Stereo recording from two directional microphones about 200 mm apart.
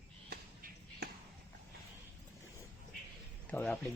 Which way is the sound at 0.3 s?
55° right (ahead or behind).